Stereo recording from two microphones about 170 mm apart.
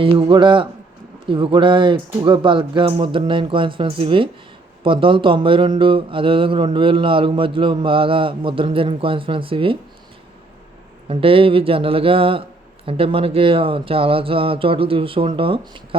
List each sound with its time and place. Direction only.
0.0 s speech: 30° right (ahead or behind)
11.1 s speech: 35° right (ahead or behind)